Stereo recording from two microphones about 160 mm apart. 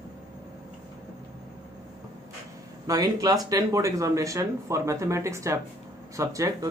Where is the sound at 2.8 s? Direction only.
25° right (ahead or behind).